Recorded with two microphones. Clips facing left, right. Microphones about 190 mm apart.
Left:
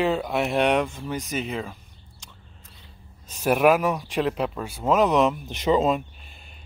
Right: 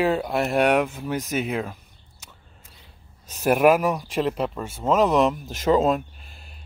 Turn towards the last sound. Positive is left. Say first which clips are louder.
# right 1 dB
turn(degrees=0)  # may be behind; listen again after turning